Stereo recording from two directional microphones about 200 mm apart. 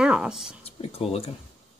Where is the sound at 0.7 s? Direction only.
30° left (ahead or behind).